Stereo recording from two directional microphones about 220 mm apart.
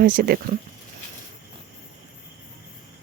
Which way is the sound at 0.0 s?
40° right (ahead or behind).